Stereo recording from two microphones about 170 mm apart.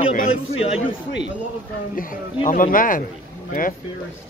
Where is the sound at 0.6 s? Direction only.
35° left (ahead or behind).